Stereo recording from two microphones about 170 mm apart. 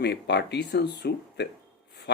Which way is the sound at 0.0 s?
80° left.